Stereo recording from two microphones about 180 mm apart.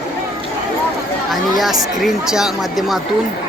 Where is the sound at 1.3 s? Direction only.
Centre (ahead or behind).